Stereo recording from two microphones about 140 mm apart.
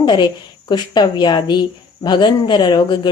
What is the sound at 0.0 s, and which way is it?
Speech, 30° left (ahead or behind).